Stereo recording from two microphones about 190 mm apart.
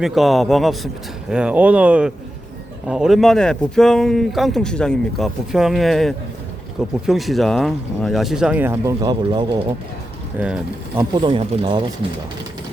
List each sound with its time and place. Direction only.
0.0 s speech: centre (ahead or behind); by 9.6 s 25° right (ahead or behind)
10.3 s speech: 10° right (ahead or behind)
11.1 s speech: 25° right (ahead or behind)